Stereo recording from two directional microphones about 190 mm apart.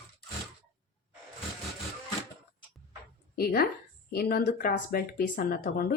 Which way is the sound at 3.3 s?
55° left (ahead or behind).